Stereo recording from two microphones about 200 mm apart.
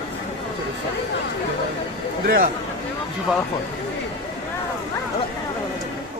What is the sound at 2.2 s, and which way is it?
Speech, 45° right (ahead or behind).